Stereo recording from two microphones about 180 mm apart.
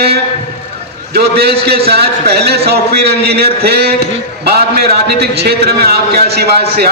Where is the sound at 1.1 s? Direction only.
60° right (ahead or behind).